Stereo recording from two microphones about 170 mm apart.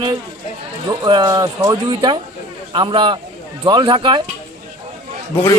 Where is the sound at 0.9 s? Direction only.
25° right (ahead or behind).